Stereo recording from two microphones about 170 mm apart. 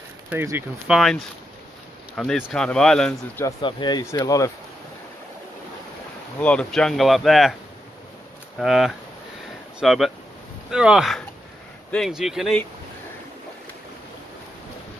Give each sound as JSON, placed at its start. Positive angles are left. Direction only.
{"t": 0.3, "sound": "a man's voice", "side_deg": -10}
{"t": 3.4, "sound": "speech", "side_deg": 25}
{"t": 6.4, "sound": "a man's voice", "side_deg": 5}
{"t": 8.5, "sound": "a man's voice", "side_deg": 0}